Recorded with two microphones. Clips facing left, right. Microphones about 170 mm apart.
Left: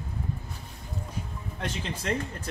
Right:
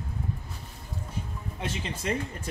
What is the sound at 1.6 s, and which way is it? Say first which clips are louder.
Speech: even; 5° right (ahead or behind).